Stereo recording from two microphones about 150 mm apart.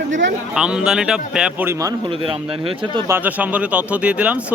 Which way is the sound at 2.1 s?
35° right (ahead or behind).